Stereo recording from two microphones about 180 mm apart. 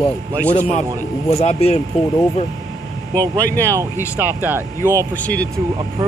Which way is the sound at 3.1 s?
10° left (ahead or behind).